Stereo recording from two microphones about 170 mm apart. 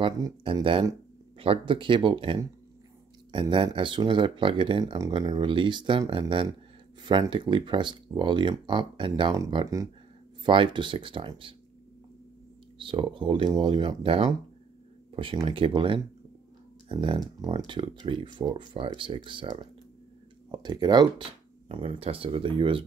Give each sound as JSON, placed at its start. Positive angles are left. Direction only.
{"t": 0.0, "sound": "speech", "side_deg": -30}
{"t": 12.7, "sound": "speech", "side_deg": -30}